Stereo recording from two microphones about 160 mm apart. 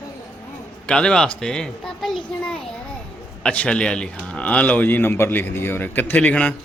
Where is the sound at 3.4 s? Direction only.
5° left (ahead or behind).